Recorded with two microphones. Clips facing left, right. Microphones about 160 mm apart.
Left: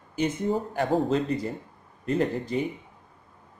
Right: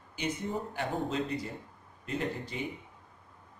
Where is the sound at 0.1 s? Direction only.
45° left (ahead or behind).